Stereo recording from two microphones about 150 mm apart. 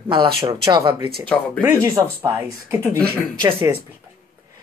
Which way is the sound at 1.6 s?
15° right (ahead or behind).